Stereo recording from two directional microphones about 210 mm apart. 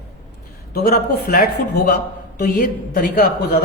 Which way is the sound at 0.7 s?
45° left (ahead or behind).